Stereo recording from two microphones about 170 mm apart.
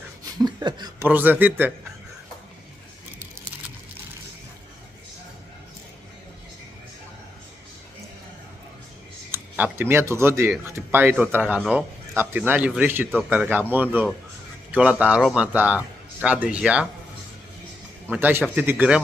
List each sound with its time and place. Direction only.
0.2 s a sound: 25° right (ahead or behind)
1.0 s a man's voice: 10° right (ahead or behind)
9.3 s a man's voice: 15° right (ahead or behind)
18.0 s a man's voice: 10° right (ahead or behind)